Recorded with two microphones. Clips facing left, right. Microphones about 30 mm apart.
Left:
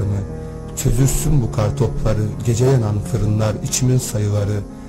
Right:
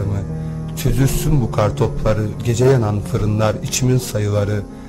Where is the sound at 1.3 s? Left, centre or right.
Centre.